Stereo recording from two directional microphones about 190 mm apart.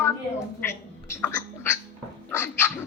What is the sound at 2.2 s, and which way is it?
Dog, 10° left (ahead or behind).